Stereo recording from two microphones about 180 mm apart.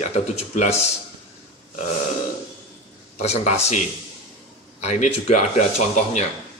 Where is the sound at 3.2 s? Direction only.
35° left (ahead or behind).